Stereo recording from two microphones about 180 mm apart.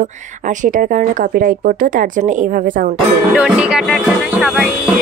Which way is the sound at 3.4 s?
5° right (ahead or behind).